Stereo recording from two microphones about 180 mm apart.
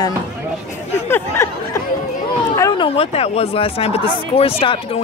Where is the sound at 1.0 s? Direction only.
15° left (ahead or behind).